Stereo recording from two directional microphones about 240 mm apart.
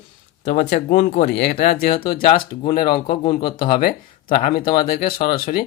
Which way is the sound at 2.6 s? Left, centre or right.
Left.